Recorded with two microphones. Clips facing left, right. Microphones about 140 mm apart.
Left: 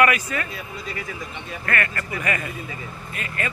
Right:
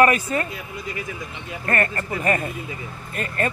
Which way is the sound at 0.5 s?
15° right (ahead or behind).